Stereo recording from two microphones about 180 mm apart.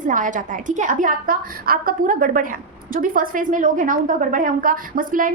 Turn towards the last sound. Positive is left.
turn(degrees=-50)  # may be behind; listen again after turning